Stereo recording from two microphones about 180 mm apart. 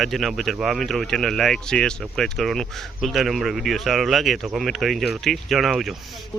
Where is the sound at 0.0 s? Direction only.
Centre (ahead or behind).